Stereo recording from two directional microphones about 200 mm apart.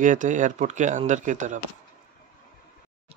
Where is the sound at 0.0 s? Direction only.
40° right (ahead or behind).